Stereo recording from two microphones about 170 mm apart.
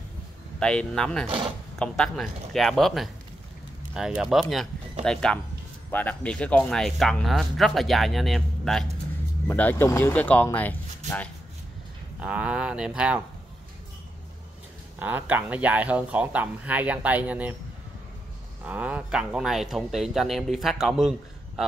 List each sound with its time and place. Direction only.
0.6 s speech: 5° left (ahead or behind)
9.5 s speech: 10° left (ahead or behind)
12.2 s speech: 5° right (ahead or behind)
15.0 s speech: 10° right (ahead or behind)
18.7 s speech: 10° right (ahead or behind)